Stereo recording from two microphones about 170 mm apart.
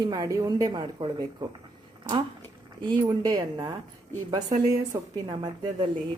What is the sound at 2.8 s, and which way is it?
Speech, 25° right (ahead or behind).